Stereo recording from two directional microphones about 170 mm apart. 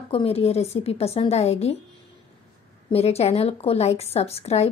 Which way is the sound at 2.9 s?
35° left (ahead or behind).